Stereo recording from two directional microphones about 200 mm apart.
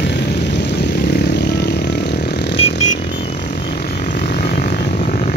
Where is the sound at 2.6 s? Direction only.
35° left (ahead or behind).